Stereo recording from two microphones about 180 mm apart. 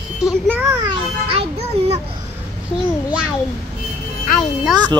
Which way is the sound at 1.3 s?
35° right (ahead or behind).